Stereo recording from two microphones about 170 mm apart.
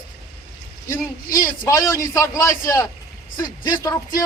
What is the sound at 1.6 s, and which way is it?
Speech, 20° left (ahead or behind).